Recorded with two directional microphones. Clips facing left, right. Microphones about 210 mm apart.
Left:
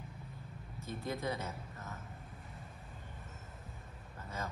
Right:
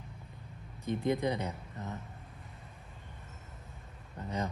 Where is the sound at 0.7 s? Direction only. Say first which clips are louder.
Right 9 dB; 15° right (ahead or behind).